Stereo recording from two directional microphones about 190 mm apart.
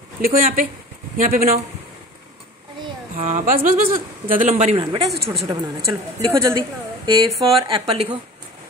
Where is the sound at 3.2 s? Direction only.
45° right (ahead or behind); by 5.1 s 30° right (ahead or behind).